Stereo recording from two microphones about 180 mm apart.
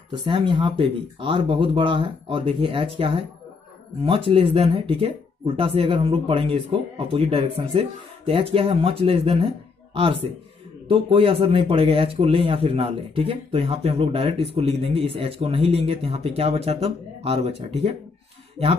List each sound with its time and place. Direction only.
0.1 s a man's voice: 25° right (ahead or behind)